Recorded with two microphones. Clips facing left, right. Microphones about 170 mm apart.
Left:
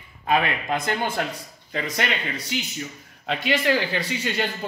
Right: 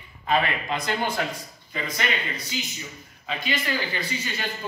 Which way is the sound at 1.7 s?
65° left (ahead or behind).